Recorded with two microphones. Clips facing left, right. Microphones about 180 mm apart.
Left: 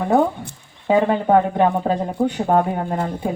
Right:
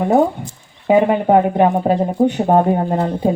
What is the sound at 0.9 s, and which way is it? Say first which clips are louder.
Speech: right 3 dB; 15° right (ahead or behind).